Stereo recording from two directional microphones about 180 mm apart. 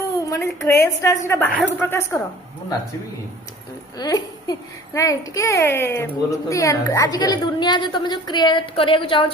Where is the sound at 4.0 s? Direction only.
20° left (ahead or behind).